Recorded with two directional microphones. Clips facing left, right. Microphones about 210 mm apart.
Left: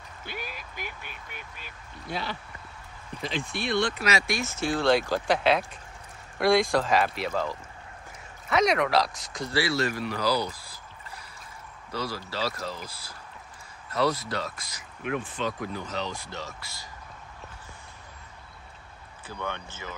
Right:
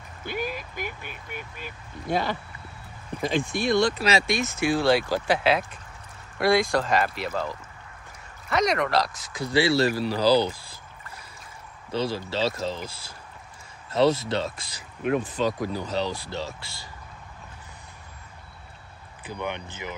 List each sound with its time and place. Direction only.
0.3 s a sound: 50° right (ahead or behind)
3.2 s speech: 45° right (ahead or behind)
4.0 s speech: 25° right (ahead or behind); by 9.5 s 5° right (ahead or behind)
9.5 s speech: 25° right (ahead or behind)
11.9 s speech: 25° right (ahead or behind)
19.2 s speech: 15° right (ahead or behind)